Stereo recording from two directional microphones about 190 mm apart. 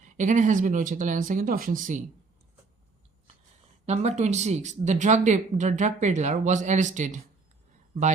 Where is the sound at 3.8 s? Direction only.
35° right (ahead or behind).